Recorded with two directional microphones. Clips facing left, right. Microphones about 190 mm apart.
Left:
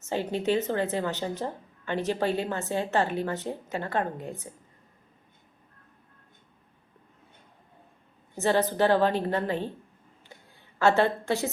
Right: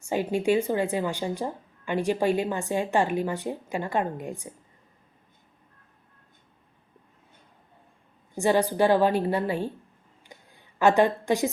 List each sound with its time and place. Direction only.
0.0 s speech: 10° right (ahead or behind)
8.4 s speech: 15° right (ahead or behind)
10.2 s a sound: 15° right (ahead or behind)